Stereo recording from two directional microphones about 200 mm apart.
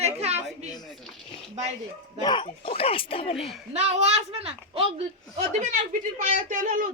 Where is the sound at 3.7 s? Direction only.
30° right (ahead or behind).